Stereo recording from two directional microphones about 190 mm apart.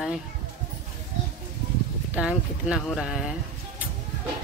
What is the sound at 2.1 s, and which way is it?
Speech, 5° right (ahead or behind).